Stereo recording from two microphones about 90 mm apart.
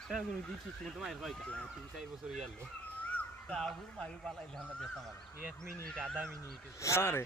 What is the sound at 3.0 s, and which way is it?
Dog, 15° left (ahead or behind).